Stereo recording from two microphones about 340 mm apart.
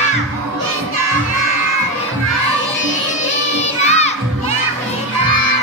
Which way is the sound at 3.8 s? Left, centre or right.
Centre.